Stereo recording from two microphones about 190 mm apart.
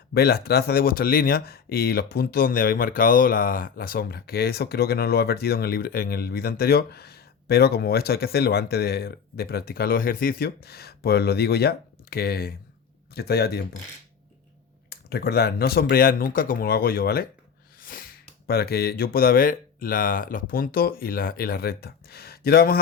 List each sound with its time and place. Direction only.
0.1 s speech: 55° left (ahead or behind)
14.8 s speech: 55° left (ahead or behind)